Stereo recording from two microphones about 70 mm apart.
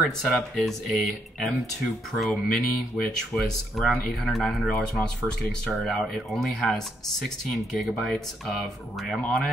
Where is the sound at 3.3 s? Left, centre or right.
Centre.